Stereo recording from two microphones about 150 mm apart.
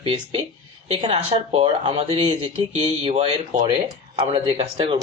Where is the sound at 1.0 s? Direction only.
45° right (ahead or behind).